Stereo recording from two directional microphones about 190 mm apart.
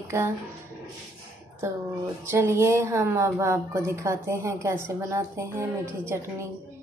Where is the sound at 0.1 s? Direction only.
15° right (ahead or behind).